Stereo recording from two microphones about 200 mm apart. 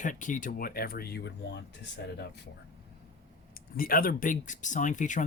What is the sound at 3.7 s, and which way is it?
Speech, 45° left (ahead or behind).